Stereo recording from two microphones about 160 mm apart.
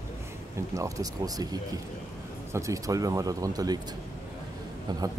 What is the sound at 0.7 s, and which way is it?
Speech, 20° right (ahead or behind).